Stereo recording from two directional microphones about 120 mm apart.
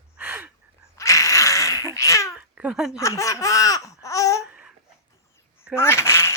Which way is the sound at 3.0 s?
25° left (ahead or behind).